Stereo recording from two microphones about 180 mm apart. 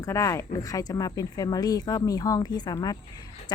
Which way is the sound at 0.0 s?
15° left (ahead or behind).